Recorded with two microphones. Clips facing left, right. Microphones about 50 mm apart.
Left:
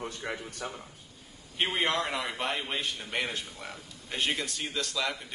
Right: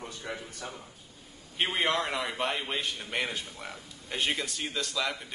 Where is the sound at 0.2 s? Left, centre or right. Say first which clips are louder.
Left 2 dB; left.